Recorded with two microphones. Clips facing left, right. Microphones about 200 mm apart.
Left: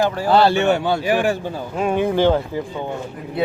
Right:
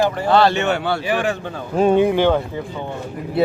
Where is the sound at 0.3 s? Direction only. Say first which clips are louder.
Left 2 dB; 10° left (ahead or behind).